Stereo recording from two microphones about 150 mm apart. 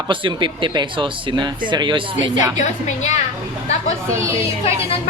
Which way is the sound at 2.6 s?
50° left (ahead or behind).